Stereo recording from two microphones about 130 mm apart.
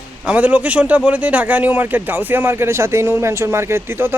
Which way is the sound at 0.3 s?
10° right (ahead or behind).